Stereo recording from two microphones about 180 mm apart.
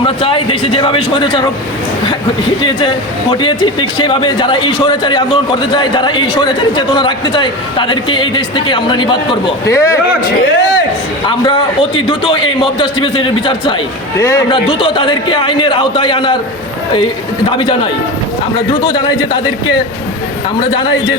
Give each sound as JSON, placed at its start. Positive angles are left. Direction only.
{"t": 0.0, "sound": "speech", "side_deg": 30}
{"t": 2.6, "sound": "a man's voice", "side_deg": 25}
{"t": 11.3, "sound": "speech", "side_deg": 25}
{"t": 14.2, "sound": "a man's voice", "side_deg": 15}
{"t": 14.5, "sound": "speech", "side_deg": 30}
{"t": 18.7, "sound": "speech", "side_deg": 25}